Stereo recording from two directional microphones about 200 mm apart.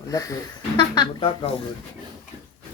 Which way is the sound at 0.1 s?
15° left (ahead or behind).